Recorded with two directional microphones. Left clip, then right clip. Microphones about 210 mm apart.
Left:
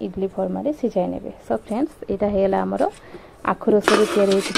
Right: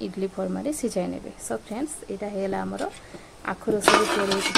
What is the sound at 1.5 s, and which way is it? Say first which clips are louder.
Speech: left 7 dB; 25° left (ahead or behind).